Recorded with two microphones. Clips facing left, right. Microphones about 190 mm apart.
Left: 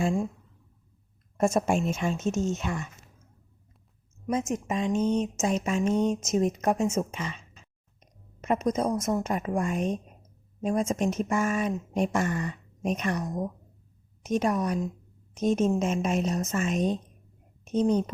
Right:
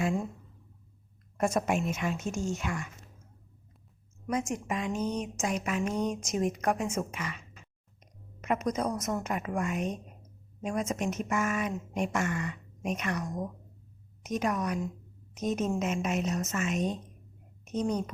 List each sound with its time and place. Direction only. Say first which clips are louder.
1.4 s a woman's voice: left 4 dB; 25° left (ahead or behind)
4.3 s a woman's voice: left 3 dB; 20° left (ahead or behind)